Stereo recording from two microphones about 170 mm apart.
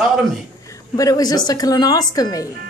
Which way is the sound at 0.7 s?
20° left (ahead or behind).